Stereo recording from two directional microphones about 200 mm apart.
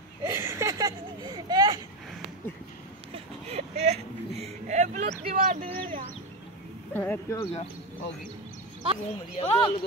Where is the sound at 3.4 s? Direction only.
30° right (ahead or behind).